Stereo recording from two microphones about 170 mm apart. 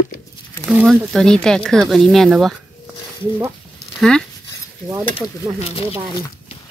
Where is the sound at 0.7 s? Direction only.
5° right (ahead or behind).